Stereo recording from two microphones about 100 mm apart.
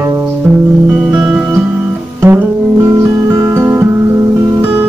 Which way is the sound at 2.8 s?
30° right (ahead or behind).